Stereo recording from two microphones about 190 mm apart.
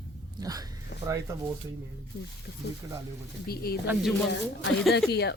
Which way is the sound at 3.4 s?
55° left (ahead or behind).